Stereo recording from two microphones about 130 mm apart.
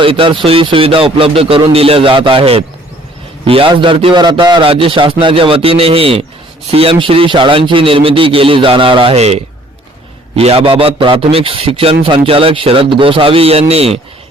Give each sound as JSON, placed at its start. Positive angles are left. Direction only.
{"t": 0.0, "sound": "a man's voice", "side_deg": -40}